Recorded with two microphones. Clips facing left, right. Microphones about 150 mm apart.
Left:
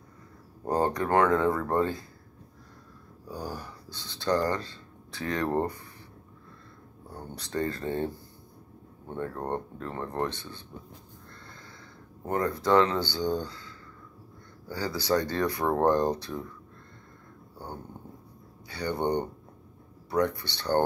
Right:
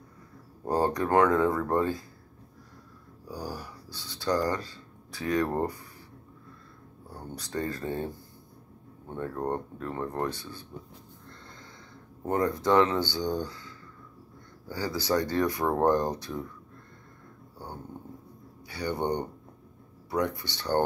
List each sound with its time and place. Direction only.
0.7 s speech: 20° left (ahead or behind)
0.9 s speech: 15° right (ahead or behind)
3.3 s speech: 10° right (ahead or behind)
7.5 s speech: 10° right (ahead or behind)
9.2 s speech: 10° right (ahead or behind)
12.3 s speech: 20° right (ahead or behind)
14.7 s speech: 15° right (ahead or behind)
16.3 s speech: 5° left (ahead or behind)
18.7 s speech: 15° right (ahead or behind)
20.1 s speech: 15° right (ahead or behind)